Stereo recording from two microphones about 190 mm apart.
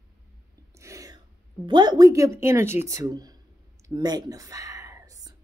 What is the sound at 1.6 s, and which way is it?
Speech, 25° right (ahead or behind).